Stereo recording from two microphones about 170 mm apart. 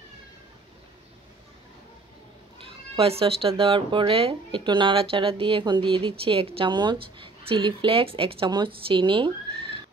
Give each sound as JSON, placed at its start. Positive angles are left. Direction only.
{"t": 2.6, "sound": "speech", "side_deg": -35}